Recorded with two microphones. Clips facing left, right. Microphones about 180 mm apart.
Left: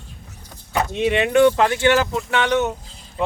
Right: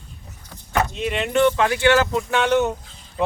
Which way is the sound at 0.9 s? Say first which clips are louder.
Left 5 dB; 65° left (ahead or behind).